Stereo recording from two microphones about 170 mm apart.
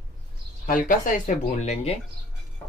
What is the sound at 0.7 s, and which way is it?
Speech, 50° left (ahead or behind).